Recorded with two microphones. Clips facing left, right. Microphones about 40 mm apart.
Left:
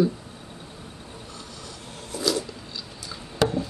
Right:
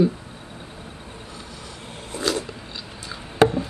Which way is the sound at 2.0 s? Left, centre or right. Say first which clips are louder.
Right 1 dB; right.